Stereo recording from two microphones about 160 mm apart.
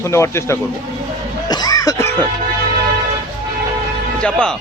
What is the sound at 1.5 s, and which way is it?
Cough, 25° left (ahead or behind).